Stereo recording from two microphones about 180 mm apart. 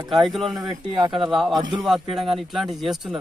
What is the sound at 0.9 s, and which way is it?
Speech, 25° right (ahead or behind).